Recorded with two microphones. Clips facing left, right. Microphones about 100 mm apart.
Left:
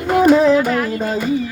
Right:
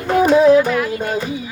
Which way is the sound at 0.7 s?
40° left (ahead or behind).